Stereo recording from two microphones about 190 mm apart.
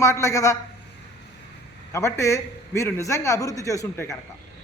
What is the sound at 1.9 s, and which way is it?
A man's voice, 15° left (ahead or behind).